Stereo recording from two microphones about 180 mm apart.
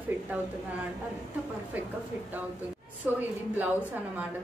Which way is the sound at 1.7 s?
10° right (ahead or behind).